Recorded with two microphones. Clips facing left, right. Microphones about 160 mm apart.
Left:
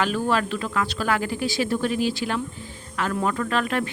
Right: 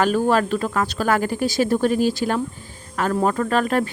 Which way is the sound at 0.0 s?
45° right (ahead or behind).